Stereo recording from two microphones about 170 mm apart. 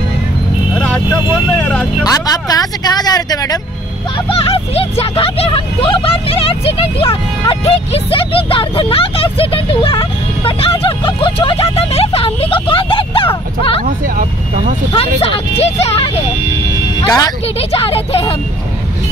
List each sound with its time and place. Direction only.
0.7 s vehicle: 10° left (ahead or behind)
2.0 s speech: 20° left (ahead or behind)
4.3 s speech: 35° left (ahead or behind)
14.9 s speech: 35° left (ahead or behind)
17.0 s speech: 20° left (ahead or behind)
17.6 s speech: 35° left (ahead or behind)